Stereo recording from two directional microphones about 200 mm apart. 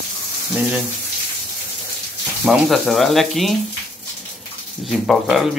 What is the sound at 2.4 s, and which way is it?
Speech, centre (ahead or behind).